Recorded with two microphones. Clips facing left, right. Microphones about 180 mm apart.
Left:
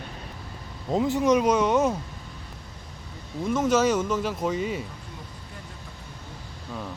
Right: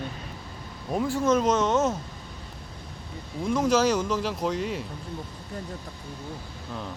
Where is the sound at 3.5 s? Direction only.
5° left (ahead or behind).